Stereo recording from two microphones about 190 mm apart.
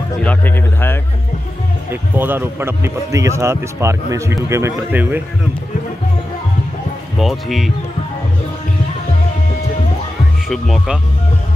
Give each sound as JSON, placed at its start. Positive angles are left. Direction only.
{"t": 0.2, "sound": "speech", "side_deg": 10}
{"t": 1.9, "sound": "speech", "side_deg": -10}
{"t": 7.2, "sound": "speech", "side_deg": 0}
{"t": 10.5, "sound": "speech", "side_deg": 0}